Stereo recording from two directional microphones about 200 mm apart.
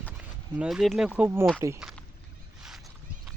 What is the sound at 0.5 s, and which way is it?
Speech, centre (ahead or behind).